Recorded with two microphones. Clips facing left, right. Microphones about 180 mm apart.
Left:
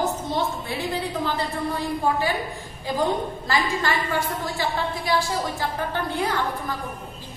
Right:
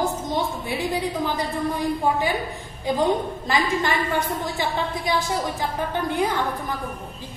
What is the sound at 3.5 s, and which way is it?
A woman's voice, 20° right (ahead or behind).